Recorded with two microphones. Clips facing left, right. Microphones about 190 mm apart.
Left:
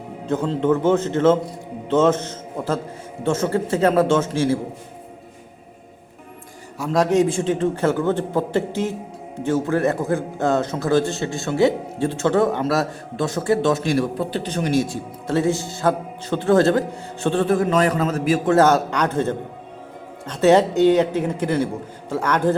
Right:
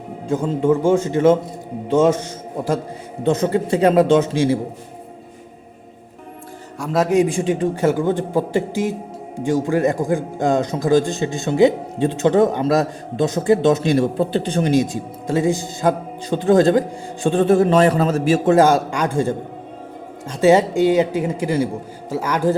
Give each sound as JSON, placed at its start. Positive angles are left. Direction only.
{"t": 0.3, "sound": "a man's voice", "side_deg": -10}
{"t": 6.7, "sound": "a man's voice", "side_deg": 0}
{"t": 17.5, "sound": "a man's voice", "side_deg": -30}
{"t": 18.5, "sound": "a man's voice", "side_deg": -10}